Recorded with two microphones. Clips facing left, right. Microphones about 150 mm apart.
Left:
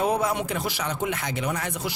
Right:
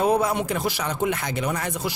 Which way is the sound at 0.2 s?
40° right (ahead or behind).